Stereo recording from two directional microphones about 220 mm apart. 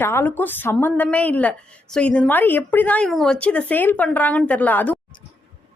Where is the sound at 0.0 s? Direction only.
10° left (ahead or behind).